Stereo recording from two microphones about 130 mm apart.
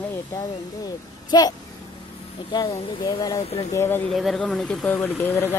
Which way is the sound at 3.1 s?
30° left (ahead or behind).